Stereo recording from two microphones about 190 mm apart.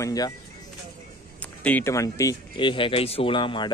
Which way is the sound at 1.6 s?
10° left (ahead or behind).